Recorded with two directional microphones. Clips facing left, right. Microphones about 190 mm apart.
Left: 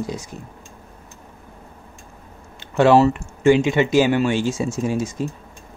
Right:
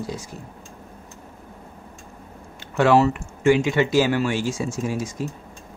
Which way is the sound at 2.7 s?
30° left (ahead or behind).